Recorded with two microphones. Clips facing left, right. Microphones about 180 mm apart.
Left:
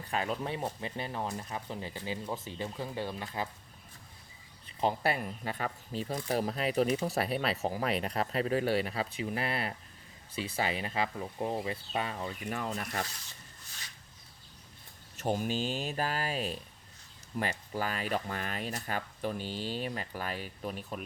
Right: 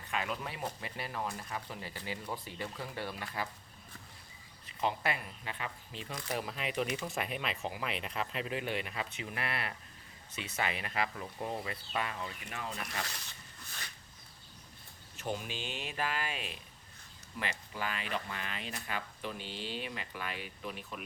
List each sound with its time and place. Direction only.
0.1 s speech: 35° left (ahead or behind)
4.8 s speech: 35° left (ahead or behind)
13.7 s a sound: 55° right (ahead or behind)
15.1 s speech: 45° left (ahead or behind)